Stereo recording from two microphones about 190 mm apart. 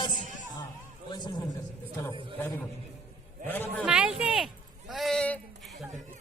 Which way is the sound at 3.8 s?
5° right (ahead or behind).